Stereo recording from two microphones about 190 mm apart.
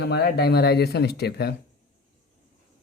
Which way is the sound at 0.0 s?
60° left (ahead or behind).